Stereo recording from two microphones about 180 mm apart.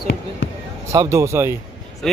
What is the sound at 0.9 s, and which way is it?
Speech, 15° right (ahead or behind).